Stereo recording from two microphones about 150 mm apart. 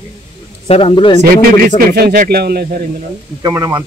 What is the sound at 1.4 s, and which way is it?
Speech, 80° right.